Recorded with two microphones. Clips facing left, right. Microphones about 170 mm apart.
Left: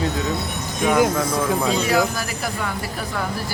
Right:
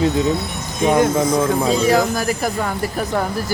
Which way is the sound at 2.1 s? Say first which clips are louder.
Right 7 dB; 45° right (ahead or behind).